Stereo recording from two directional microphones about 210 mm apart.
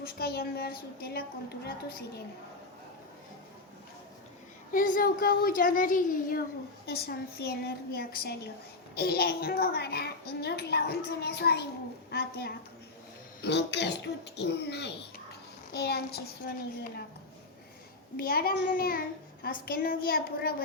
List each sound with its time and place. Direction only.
0.0 s a child's voice: 45° left (ahead or behind)
4.7 s a child's voice: 40° left (ahead or behind)
18.2 s a child's voice: 45° left (ahead or behind)